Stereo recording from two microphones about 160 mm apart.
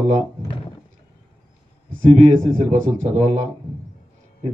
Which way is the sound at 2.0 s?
50° right (ahead or behind).